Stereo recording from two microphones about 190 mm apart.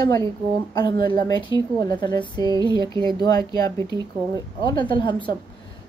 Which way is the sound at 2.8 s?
25° right (ahead or behind).